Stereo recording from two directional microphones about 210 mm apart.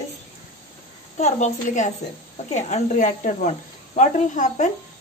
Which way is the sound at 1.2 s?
35° left (ahead or behind).